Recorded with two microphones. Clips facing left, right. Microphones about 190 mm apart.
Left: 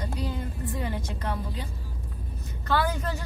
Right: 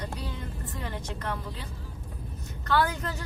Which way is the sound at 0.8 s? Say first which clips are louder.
Left 2 dB; 10° left (ahead or behind).